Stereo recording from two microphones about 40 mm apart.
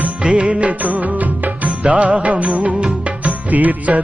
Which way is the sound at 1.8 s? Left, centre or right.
Right.